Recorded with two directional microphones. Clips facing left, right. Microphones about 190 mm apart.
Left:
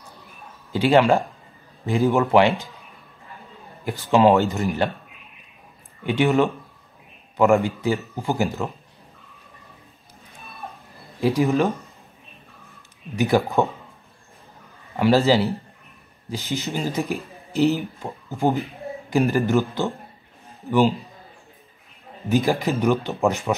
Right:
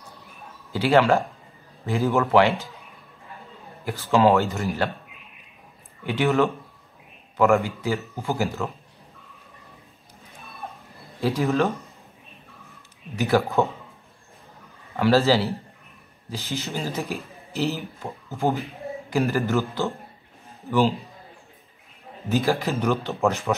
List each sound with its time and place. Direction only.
0.7 s a man's voice: 20° left (ahead or behind)
3.8 s speech: 15° left (ahead or behind)
6.0 s a man's voice: 20° left (ahead or behind)
11.1 s speech: 15° left (ahead or behind)
13.1 s speech: 15° left (ahead or behind)
15.0 s speech: 15° left (ahead or behind)
22.3 s speech: 15° left (ahead or behind)